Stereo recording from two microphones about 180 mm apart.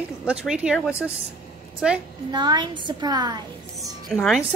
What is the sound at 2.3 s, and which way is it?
A woman's voice, 25° right (ahead or behind).